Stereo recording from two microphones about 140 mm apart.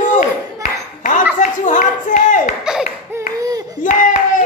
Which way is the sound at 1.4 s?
65° left (ahead or behind).